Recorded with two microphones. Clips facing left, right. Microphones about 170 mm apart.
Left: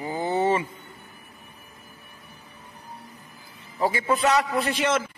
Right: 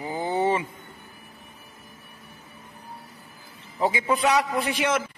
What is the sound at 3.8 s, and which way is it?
A man's voice, 15° right (ahead or behind).